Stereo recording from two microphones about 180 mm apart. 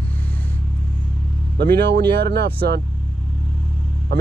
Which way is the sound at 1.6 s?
65° right (ahead or behind).